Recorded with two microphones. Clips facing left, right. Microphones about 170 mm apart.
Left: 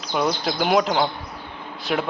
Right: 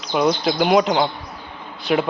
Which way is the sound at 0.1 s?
Centre (ahead or behind).